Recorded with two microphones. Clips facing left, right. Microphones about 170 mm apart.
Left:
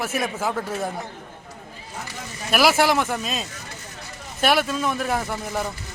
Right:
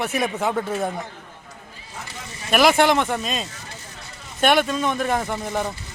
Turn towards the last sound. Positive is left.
turn(degrees=0)  # may be behind; listen again after turning